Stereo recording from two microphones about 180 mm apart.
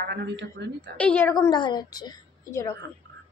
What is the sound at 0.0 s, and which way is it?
Speech, 70° right (ahead or behind).